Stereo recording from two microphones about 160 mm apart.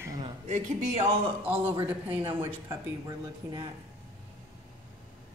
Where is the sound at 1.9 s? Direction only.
10° right (ahead or behind).